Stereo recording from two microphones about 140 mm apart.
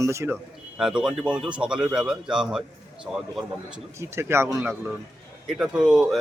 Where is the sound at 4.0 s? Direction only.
20° right (ahead or behind).